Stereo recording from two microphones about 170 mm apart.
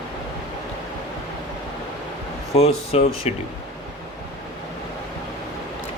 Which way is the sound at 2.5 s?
35° left (ahead or behind).